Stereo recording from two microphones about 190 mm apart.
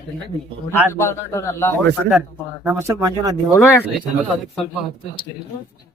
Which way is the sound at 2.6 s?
15° right (ahead or behind).